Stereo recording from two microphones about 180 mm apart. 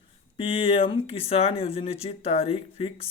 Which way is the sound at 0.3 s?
30° left (ahead or behind).